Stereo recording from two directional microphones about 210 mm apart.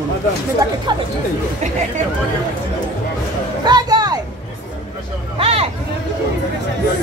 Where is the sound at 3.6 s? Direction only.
20° right (ahead or behind).